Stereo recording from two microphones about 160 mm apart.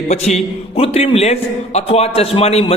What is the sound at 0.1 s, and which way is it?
A man's voice, 45° left (ahead or behind).